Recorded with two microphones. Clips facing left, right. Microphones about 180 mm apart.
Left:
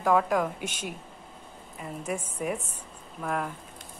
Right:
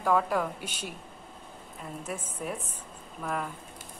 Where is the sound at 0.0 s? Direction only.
5° left (ahead or behind).